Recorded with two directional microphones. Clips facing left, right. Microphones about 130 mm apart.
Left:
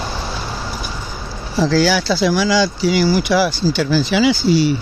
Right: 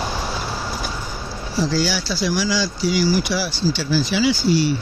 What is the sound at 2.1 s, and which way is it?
Speech, 90° left.